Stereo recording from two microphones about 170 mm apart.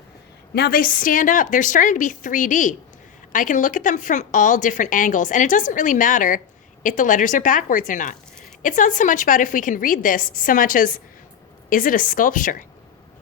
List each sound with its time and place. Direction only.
0.5 s a woman's voice: 65° left (ahead or behind)